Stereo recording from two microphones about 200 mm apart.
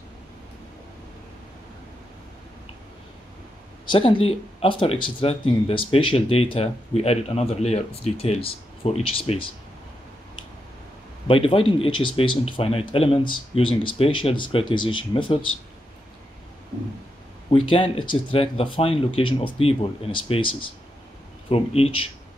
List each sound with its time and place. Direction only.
3.8 s speech: 25° left (ahead or behind)
11.2 s speech: 25° left (ahead or behind)
17.5 s speech: 25° left (ahead or behind)